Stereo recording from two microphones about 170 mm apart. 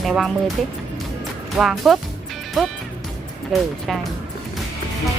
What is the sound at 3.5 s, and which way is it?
Speech, centre (ahead or behind).